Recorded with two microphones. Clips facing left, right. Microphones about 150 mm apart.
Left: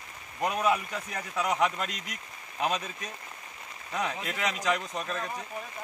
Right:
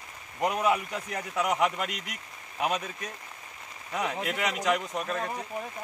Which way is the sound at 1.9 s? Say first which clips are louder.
Right 2 dB; 65° right (ahead or behind).